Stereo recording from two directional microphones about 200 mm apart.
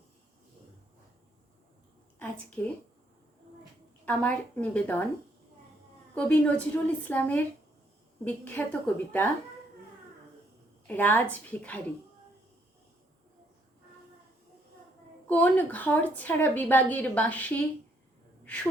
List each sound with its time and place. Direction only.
2.1 s a woman's voice: 5° left (ahead or behind)
4.0 s a woman's voice: 5° left (ahead or behind)
6.1 s a woman's voice: 5° left (ahead or behind)
10.8 s a woman's voice: 10° left (ahead or behind)
15.3 s a woman's voice: 10° left (ahead or behind)
18.4 s gasp: 5° left (ahead or behind)